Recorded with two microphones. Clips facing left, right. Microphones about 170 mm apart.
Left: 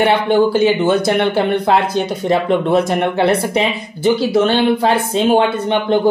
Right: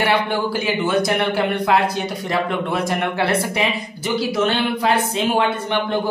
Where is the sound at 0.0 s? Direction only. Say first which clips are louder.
Left 7 dB; 20° left (ahead or behind).